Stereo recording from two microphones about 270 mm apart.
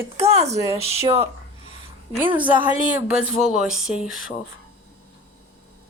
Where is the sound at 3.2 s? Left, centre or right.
Centre.